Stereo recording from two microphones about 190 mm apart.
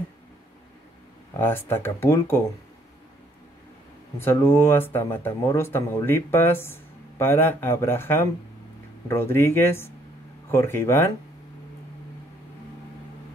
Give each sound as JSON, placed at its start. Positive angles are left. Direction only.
{"t": 1.4, "sound": "speech", "side_deg": 10}
{"t": 4.2, "sound": "speech", "side_deg": 10}